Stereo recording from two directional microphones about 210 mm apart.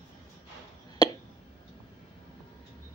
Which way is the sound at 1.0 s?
20° left (ahead or behind).